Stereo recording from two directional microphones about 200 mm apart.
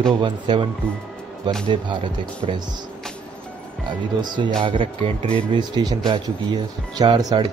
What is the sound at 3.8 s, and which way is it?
Speech, 25° right (ahead or behind).